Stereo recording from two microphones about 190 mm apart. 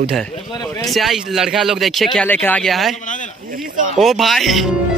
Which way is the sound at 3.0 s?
40° left (ahead or behind).